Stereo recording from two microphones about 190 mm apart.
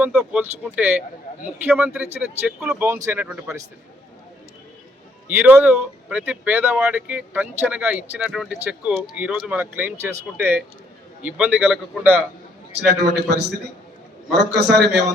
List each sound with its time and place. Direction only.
0.0 s speech: 5° right (ahead or behind)
5.4 s a man's voice: 10° right (ahead or behind)
12.9 s a man's voice: 60° right (ahead or behind)